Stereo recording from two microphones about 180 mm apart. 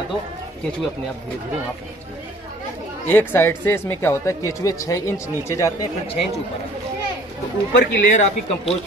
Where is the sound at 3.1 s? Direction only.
10° left (ahead or behind).